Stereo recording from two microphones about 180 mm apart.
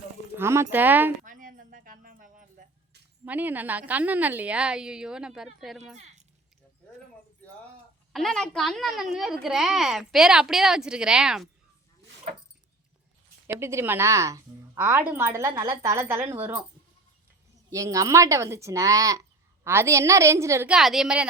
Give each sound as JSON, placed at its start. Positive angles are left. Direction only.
{"t": 0.3, "sound": "a woman's voice", "side_deg": -15}
{"t": 1.2, "sound": "a sound", "side_deg": -45}
{"t": 3.2, "sound": "a woman's voice", "side_deg": -10}
{"t": 8.1, "sound": "a woman's voice", "side_deg": 0}
{"t": 13.5, "sound": "a woman's voice", "side_deg": -15}
{"t": 17.7, "sound": "a woman's voice", "side_deg": -20}
{"t": 20.7, "sound": "a woman's voice", "side_deg": 0}